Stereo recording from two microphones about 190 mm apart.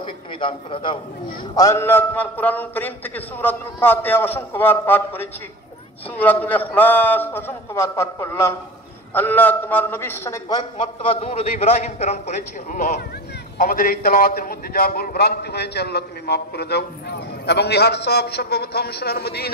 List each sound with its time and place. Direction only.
0.0 s a man's voice: 25° left (ahead or behind)
13.6 s a man's voice: 50° left (ahead or behind)